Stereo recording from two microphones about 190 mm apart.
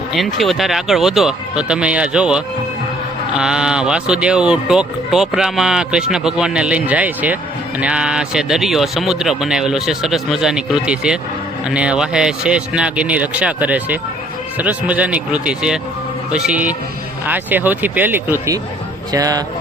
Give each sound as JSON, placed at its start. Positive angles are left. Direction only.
{"t": 0.2, "sound": "speech", "side_deg": 0}